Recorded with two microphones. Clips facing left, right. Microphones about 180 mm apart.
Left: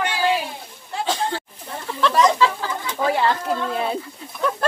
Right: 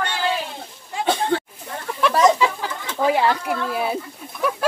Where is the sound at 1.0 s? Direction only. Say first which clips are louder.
Right 4 dB; 60° right (ahead or behind).